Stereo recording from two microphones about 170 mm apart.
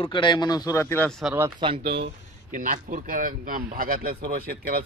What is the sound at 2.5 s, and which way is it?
Speech, 50° right (ahead or behind).